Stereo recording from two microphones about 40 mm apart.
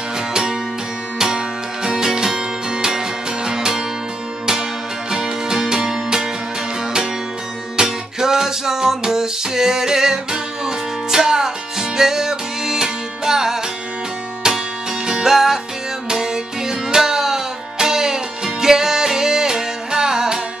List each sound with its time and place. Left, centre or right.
0.3 s music: right
5.1 s music: centre
7.7 s music: centre